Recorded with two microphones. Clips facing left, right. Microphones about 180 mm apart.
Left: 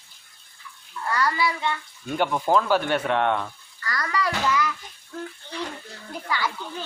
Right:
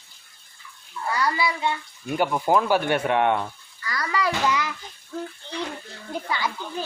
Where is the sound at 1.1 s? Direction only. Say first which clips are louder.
Even; 15° right (ahead or behind).